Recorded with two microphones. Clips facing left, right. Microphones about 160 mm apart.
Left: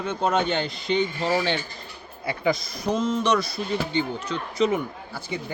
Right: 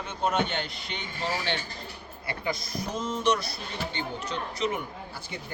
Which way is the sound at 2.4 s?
90° left.